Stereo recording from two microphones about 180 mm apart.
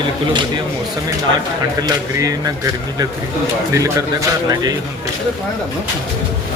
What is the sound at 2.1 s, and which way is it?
Speech, 20° right (ahead or behind).